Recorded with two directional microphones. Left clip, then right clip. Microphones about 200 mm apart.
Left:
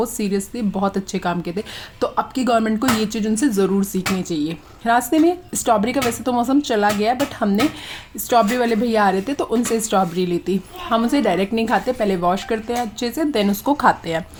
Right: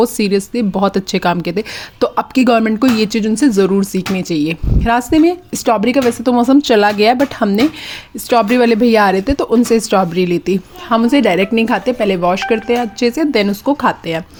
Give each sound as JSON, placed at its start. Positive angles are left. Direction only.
{"t": 0.0, "sound": "speech", "side_deg": -30}
{"t": 13.7, "sound": "speech", "side_deg": -15}